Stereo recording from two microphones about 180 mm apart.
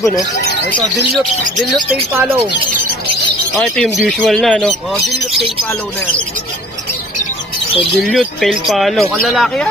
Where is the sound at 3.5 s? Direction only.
5° left (ahead or behind).